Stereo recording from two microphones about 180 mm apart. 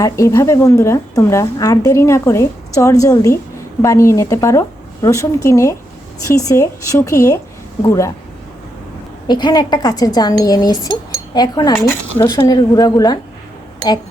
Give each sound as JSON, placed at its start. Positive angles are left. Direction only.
{"t": 0.0, "sound": "a woman's voice", "side_deg": 15}
{"t": 9.2, "sound": "speech", "side_deg": 25}